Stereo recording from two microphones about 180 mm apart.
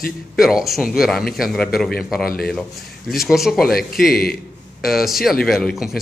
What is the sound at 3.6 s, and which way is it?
Speech, 55° left (ahead or behind).